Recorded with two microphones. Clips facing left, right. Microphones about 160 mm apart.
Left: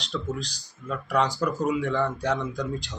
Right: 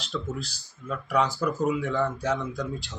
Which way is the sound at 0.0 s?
5° right (ahead or behind).